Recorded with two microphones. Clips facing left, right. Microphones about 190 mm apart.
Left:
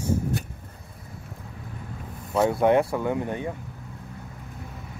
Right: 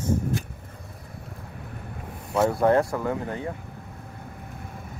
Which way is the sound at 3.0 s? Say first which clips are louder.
Left 2 dB; 20° left (ahead or behind).